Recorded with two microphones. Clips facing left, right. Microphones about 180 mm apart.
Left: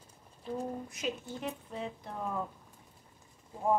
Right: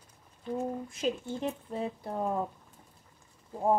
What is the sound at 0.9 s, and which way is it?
A woman's voice, 30° right (ahead or behind).